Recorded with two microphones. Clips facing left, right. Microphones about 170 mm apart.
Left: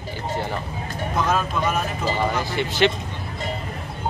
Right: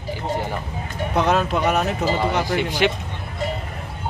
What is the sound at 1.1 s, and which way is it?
Speech, 70° right (ahead or behind).